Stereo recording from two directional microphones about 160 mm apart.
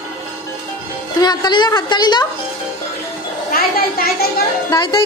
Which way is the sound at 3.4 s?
65° left (ahead or behind).